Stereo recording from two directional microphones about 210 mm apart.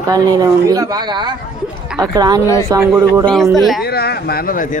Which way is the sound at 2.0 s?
20° right (ahead or behind).